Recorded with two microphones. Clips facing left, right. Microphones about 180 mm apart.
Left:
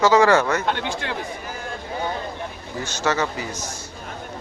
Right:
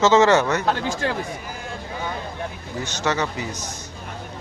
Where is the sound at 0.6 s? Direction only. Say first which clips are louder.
Right 2 dB; 40° right (ahead or behind).